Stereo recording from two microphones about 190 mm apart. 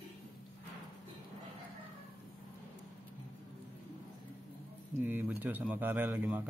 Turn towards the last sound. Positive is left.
turn(degrees=-10)  # may be behind; listen again after turning